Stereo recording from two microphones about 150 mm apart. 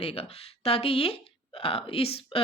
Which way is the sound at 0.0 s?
40° left (ahead or behind).